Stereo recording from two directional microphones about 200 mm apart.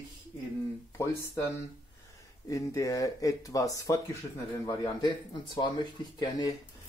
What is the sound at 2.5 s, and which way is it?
Speech, 15° left (ahead or behind).